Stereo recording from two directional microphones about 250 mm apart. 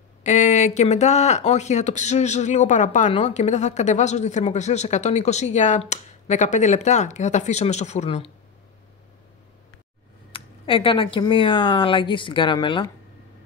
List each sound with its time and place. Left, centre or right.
0.2 s speech: left
10.3 s speech: left